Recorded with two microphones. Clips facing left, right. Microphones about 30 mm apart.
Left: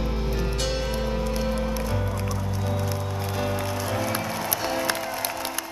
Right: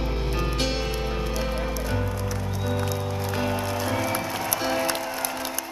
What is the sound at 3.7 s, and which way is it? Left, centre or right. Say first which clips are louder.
Music: right 1 dB; centre.